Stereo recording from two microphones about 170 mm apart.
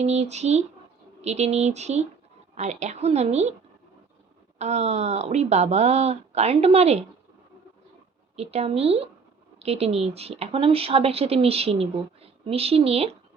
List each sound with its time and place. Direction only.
0.0 s speech: 40° right (ahead or behind)
4.5 s speech: 40° right (ahead or behind)
8.4 s speech: 35° right (ahead or behind)